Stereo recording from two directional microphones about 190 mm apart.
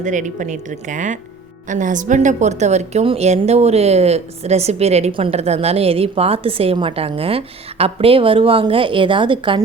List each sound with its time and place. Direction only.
0.0 s a woman's voice: 40° right (ahead or behind); by 9.6 s 25° right (ahead or behind)